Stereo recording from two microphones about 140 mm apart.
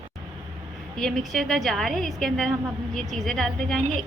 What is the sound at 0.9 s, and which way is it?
A woman's voice, centre (ahead or behind).